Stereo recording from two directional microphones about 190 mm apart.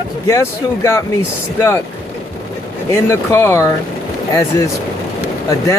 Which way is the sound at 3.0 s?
15° left (ahead or behind).